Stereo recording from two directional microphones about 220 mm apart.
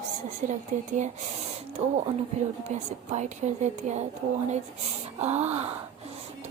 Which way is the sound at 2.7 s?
30° right (ahead or behind).